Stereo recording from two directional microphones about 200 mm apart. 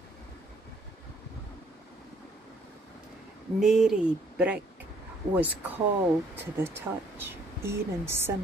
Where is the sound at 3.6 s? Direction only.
Centre (ahead or behind).